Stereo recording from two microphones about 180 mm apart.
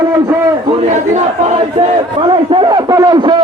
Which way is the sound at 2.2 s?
30° right (ahead or behind).